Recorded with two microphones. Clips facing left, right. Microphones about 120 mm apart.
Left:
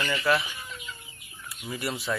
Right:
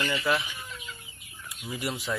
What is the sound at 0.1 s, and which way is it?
Speech, 10° right (ahead or behind).